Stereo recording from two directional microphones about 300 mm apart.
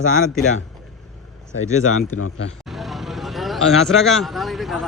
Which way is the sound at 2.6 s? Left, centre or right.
Centre.